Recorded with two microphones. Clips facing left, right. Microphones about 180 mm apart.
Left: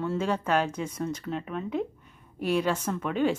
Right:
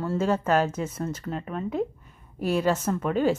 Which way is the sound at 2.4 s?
45° right (ahead or behind).